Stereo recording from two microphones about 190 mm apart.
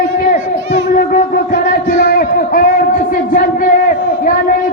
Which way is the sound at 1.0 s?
50° left (ahead or behind).